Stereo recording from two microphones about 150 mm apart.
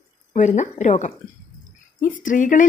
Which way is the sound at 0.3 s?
55° left (ahead or behind).